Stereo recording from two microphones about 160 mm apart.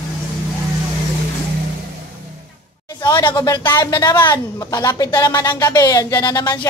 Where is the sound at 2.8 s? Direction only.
20° left (ahead or behind).